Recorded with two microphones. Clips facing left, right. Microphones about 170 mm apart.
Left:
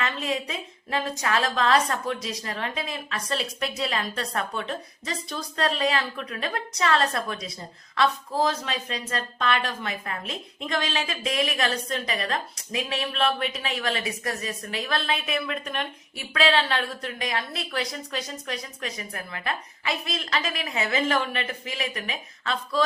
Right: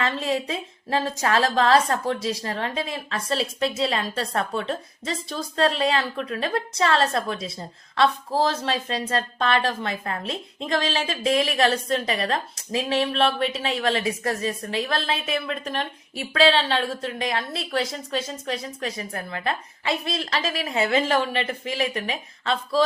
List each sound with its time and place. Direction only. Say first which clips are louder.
0.0 s speech: right 4 dB; 30° right (ahead or behind)